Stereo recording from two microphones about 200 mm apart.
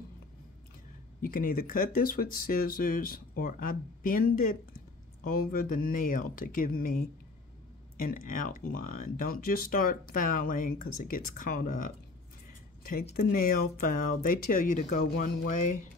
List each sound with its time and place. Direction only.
1.2 s speech: 45° left (ahead or behind)
13.1 s speech: 45° left (ahead or behind)